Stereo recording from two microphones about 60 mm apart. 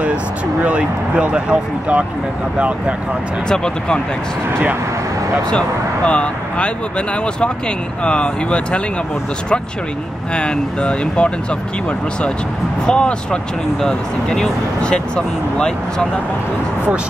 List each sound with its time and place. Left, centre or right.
0.7 s speech: centre
3.4 s speech: centre
5.5 s speech: centre
8.0 s speech: centre
10.3 s speech: centre
12.8 s speech: centre